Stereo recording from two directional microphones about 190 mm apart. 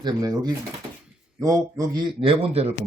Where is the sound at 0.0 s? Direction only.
20° right (ahead or behind).